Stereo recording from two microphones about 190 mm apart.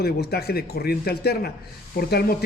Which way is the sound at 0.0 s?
55° left (ahead or behind).